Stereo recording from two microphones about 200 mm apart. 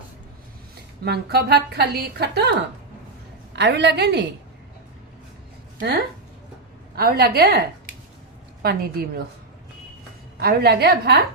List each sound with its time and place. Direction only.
1.0 s a woman's voice: 55° right (ahead or behind)
6.9 s a woman's voice: 50° right (ahead or behind)
8.6 s a woman's voice: 50° right (ahead or behind)
10.4 s a woman's voice: 50° right (ahead or behind)